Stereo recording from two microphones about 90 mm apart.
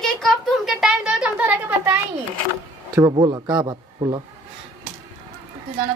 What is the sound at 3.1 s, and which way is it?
Speech, 55° right (ahead or behind).